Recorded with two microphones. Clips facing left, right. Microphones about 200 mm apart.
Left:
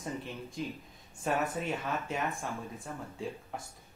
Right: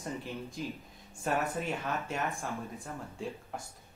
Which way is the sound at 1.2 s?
Centre (ahead or behind).